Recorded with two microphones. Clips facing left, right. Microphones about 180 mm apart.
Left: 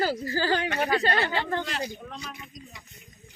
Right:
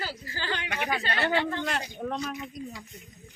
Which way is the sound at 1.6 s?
55° right (ahead or behind).